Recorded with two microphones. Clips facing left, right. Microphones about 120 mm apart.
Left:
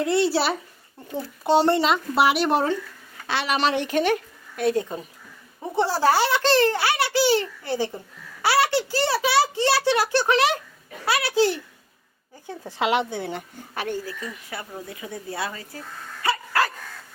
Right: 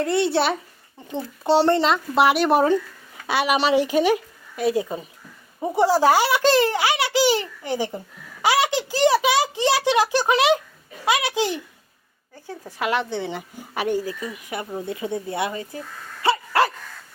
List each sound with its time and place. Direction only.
0.0 s speech: centre (ahead or behind)
3.2 s a child's voice: 10° right (ahead or behind)
12.5 s speech: 20° left (ahead or behind)
13.1 s speech: 5° left (ahead or behind)
13.7 s speech: 15° right (ahead or behind)
16.2 s dog: 25° right (ahead or behind)